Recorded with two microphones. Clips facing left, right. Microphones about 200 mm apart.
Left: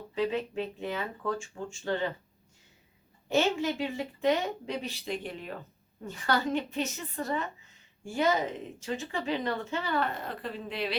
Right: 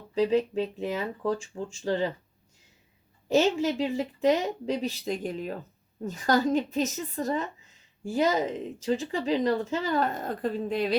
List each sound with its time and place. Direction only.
0.1 s speech: 40° right (ahead or behind)
3.2 s speech: 35° right (ahead or behind)